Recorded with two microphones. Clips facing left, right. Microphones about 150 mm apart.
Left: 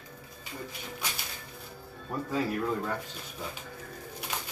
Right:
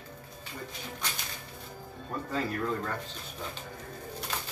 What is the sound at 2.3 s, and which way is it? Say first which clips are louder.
Speech: left 2 dB; 10° left (ahead or behind).